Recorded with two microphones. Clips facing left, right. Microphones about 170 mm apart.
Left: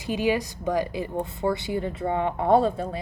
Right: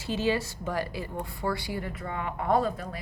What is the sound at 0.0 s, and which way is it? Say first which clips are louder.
A woman's voice: left 3 dB; 15° left (ahead or behind).